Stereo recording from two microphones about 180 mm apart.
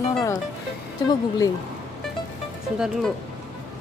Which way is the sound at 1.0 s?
25° left (ahead or behind).